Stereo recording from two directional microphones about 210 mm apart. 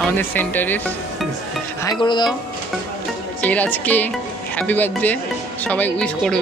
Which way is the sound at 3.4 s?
5° left (ahead or behind).